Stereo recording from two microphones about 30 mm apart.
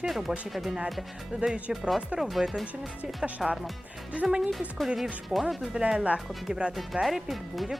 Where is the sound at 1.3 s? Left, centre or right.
Right.